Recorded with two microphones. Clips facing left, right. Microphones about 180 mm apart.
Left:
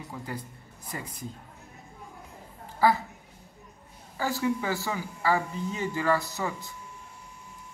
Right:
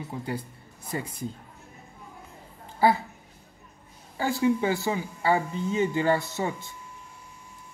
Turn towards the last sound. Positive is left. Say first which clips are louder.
# right 3 dB
turn(degrees=-25)  # may be behind; listen again after turning